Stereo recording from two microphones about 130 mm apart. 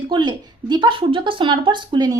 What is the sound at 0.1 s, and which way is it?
A woman's voice, 35° right (ahead or behind).